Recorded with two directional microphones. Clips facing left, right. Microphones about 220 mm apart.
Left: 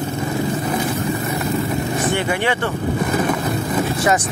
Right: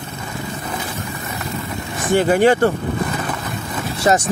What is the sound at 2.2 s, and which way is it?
Speech, 40° right (ahead or behind).